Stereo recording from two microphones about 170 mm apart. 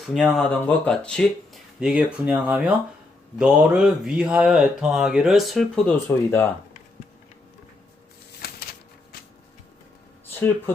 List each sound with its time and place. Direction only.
0.1 s speech: centre (ahead or behind)
6.1 s speech: 15° left (ahead or behind)
8.4 s a sound: 65° left (ahead or behind)